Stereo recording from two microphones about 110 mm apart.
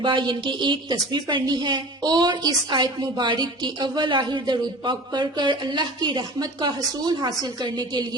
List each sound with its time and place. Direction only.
0.0 s a woman's voice: 45° right (ahead or behind)